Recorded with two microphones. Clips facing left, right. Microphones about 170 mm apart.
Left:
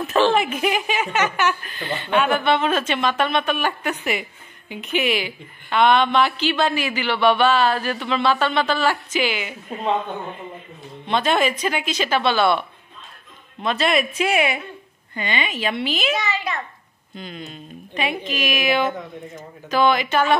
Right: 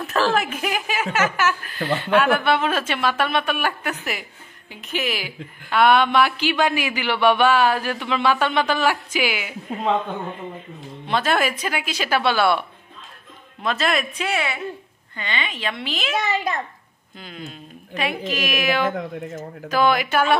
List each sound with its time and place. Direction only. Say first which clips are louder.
0.0 s speech: left 3 dB; centre (ahead or behind)
1.8 s a woman's voice: right 4 dB; 90° right
2.1 s a woman's voice: even; 5° right (ahead or behind)
11.1 s a woman's voice: left 1 dB; 5° right (ahead or behind)
14.2 s a woman's voice: left 4 dB; 15° left (ahead or behind)
16.2 s a child's voice: right 2 dB; 50° right (ahead or behind)
17.2 s a woman's voice: left 2 dB; 5° right (ahead or behind)